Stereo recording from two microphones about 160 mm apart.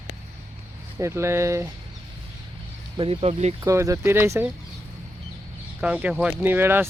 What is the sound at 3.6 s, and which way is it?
Speech, 20° right (ahead or behind).